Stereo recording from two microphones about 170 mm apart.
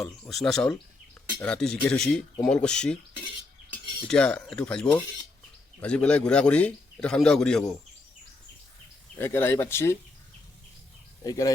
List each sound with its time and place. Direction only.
0.0 s a man's voice: centre (ahead or behind)
4.1 s a man's voice: 5° left (ahead or behind)
9.1 s speech: 15° left (ahead or behind)
11.2 s speech: 20° left (ahead or behind)